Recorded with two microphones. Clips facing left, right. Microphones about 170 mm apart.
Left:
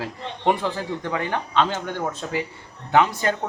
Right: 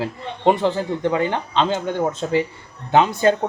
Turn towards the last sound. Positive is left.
turn(degrees=-25)  # may be behind; listen again after turning